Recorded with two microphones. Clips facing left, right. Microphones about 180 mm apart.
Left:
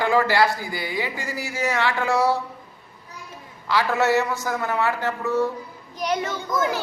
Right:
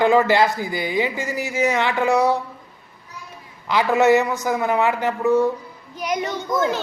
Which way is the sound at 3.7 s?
20° right (ahead or behind).